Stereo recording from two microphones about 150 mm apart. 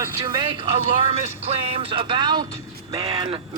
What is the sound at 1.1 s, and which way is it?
A man's voice, 40° right (ahead or behind).